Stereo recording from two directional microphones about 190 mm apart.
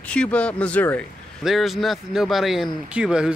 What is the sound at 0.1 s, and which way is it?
Speech, 5° left (ahead or behind).